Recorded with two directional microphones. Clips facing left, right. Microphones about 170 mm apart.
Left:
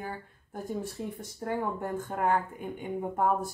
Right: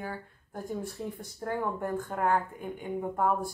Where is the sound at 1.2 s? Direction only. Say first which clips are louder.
Left 1 dB; 20° left (ahead or behind).